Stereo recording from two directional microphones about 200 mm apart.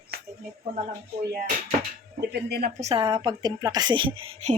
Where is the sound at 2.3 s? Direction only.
55° right (ahead or behind).